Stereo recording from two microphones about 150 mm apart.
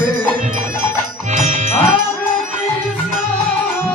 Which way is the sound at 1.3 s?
55° right (ahead or behind).